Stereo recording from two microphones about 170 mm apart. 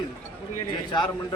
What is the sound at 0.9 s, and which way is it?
Speech, 25° left (ahead or behind).